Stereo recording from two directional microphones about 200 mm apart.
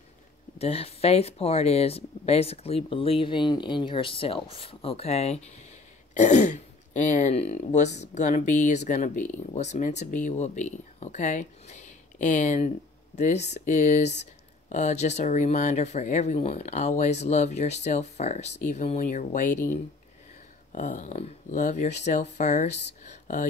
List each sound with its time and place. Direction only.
0.6 s speech: 30° left (ahead or behind)